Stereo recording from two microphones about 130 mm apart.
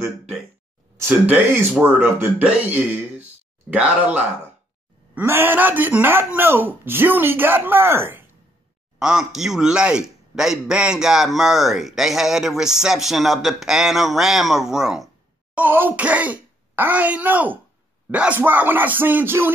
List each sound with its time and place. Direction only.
0.9 s speech: 15° right (ahead or behind)
9.0 s a man's voice: 5° right (ahead or behind)